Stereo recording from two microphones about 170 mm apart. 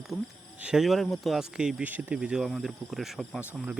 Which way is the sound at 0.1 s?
10° left (ahead or behind).